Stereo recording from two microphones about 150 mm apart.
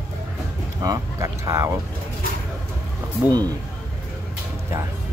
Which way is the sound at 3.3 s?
25° right (ahead or behind).